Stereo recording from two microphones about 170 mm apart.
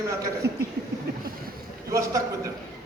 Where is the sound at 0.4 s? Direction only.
75° right (ahead or behind).